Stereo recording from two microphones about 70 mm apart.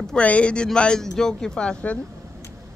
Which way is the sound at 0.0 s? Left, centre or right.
Centre.